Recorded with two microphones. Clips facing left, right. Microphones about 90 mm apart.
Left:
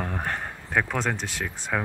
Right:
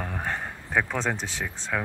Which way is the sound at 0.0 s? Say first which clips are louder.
Left 1 dB; centre (ahead or behind).